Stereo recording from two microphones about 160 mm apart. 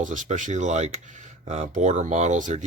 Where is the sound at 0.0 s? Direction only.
50° right (ahead or behind).